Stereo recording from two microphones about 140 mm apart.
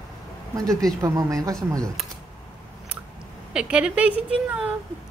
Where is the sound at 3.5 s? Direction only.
5° right (ahead or behind).